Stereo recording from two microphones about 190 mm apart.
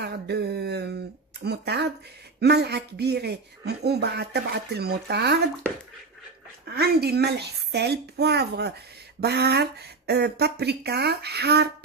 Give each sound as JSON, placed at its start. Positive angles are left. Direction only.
{"t": 0.0, "sound": "a sound", "side_deg": -60}
{"t": 2.4, "sound": "speech", "side_deg": -60}
{"t": 6.7, "sound": "speech", "side_deg": -55}